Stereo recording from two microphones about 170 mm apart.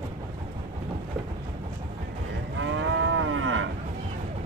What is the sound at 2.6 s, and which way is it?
Moo, 90° right.